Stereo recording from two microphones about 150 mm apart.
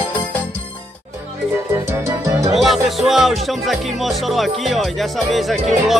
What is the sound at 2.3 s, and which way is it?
Music, 20° right (ahead or behind).